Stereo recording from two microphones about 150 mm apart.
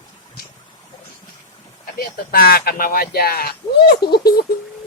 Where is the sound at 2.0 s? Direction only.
75° left (ahead or behind).